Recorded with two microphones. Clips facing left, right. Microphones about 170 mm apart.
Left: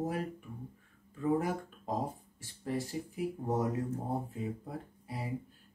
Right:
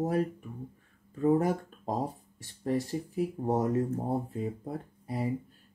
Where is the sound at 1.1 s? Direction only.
40° right (ahead or behind).